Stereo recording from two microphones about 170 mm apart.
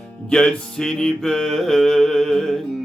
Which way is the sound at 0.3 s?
5° left (ahead or behind).